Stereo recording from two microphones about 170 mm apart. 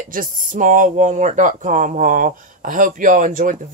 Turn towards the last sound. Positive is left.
turn(degrees=-50)  # may be behind; listen again after turning